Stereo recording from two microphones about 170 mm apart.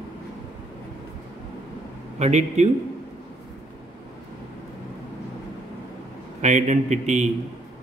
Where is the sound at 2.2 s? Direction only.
40° right (ahead or behind).